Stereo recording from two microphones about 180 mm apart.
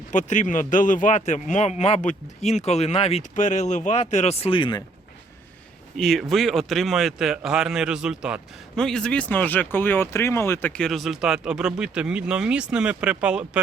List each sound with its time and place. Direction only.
0.1 s speech: 45° left (ahead or behind); by 4.8 s 25° left (ahead or behind)
6.0 s speech: centre (ahead or behind)